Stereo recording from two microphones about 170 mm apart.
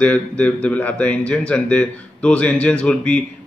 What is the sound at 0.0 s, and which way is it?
A man's voice, 10° left (ahead or behind).